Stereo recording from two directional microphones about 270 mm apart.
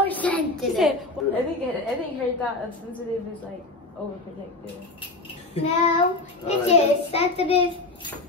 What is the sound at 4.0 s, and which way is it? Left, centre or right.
Speech, centre.